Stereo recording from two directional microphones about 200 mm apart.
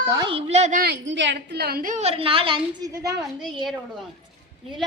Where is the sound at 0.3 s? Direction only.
30° right (ahead or behind).